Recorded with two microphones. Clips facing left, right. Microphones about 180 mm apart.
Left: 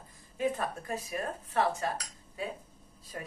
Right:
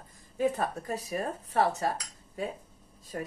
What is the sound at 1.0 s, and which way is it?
Speech, 35° right (ahead or behind).